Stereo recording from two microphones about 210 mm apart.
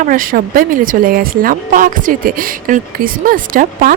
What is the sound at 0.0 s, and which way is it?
Speech, 40° right (ahead or behind).